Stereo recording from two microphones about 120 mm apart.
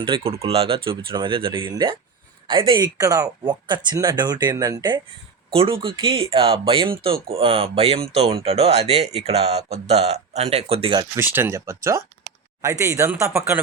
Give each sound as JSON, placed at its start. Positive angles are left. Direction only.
{"t": 0.0, "sound": "speech", "side_deg": -50}
{"t": 5.5, "sound": "speech", "side_deg": -50}
{"t": 11.2, "sound": "speech", "side_deg": -15}